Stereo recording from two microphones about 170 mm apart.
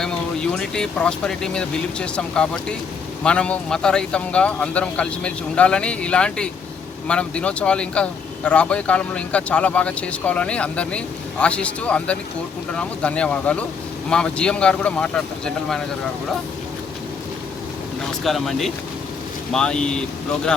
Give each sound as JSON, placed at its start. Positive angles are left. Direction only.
{"t": 0.0, "sound": "speech", "side_deg": 5}
{"t": 18.2, "sound": "speech", "side_deg": 0}